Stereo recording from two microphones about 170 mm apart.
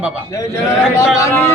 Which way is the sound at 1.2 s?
15° left (ahead or behind).